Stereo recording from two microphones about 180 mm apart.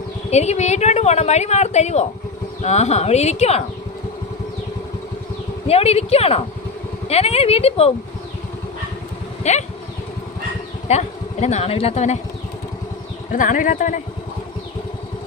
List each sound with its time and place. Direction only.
0.3 s a woman's voice: 35° left (ahead or behind)
5.6 s a woman's voice: 35° left (ahead or behind)
9.4 s speech: 40° left (ahead or behind)
10.8 s speech: 40° left (ahead or behind)
13.3 s speech: 50° left (ahead or behind)